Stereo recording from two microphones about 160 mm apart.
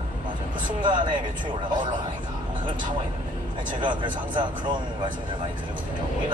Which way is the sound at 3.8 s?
30° right (ahead or behind).